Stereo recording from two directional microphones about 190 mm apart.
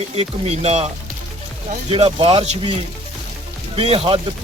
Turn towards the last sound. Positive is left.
turn(degrees=-30)  # may be behind; listen again after turning